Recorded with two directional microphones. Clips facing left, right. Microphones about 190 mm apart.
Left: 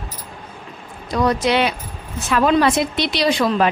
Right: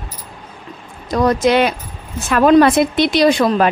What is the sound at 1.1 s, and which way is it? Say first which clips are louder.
Speech: right 4 dB; 45° right (ahead or behind).